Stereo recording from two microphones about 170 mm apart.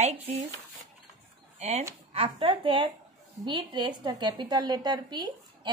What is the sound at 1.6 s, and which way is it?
A woman's voice, 40° right (ahead or behind).